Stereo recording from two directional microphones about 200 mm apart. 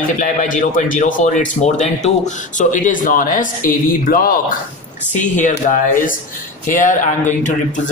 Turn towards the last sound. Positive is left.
turn(degrees=35)  # may be behind; listen again after turning